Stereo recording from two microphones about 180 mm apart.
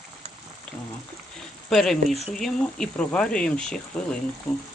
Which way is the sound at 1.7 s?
Centre (ahead or behind).